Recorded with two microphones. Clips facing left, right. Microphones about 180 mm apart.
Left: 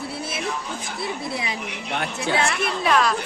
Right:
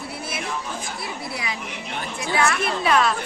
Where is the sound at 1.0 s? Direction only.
25° left (ahead or behind).